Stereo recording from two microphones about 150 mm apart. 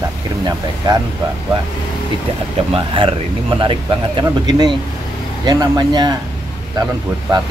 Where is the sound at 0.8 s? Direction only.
30° right (ahead or behind).